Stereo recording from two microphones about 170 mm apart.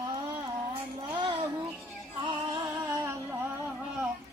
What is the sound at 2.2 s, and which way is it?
Music, 25° right (ahead or behind).